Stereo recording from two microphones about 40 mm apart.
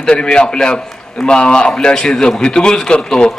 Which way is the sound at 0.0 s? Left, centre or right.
Left.